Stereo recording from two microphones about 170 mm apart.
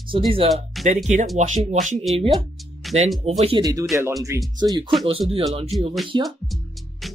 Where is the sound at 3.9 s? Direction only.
15° right (ahead or behind).